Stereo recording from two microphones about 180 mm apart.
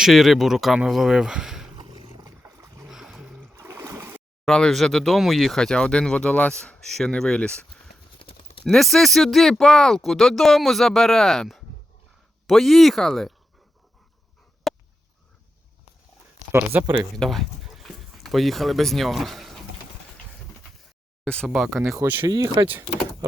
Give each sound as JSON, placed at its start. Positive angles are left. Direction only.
{"t": 0.0, "sound": "speech", "side_deg": 0}
{"t": 1.8, "sound": "roar", "side_deg": -25}
{"t": 2.8, "sound": "a sound", "side_deg": -5}
{"t": 4.4, "sound": "speech", "side_deg": 5}
{"t": 8.2, "sound": "a sound", "side_deg": 30}
{"t": 8.6, "sound": "speech", "side_deg": 0}
{"t": 14.7, "sound": "a sound", "side_deg": 0}
{"t": 16.5, "sound": "speech", "side_deg": -10}
{"t": 17.2, "sound": "speech", "side_deg": 0}
{"t": 21.2, "sound": "speech", "side_deg": 5}
{"t": 22.2, "sound": "speech", "side_deg": -20}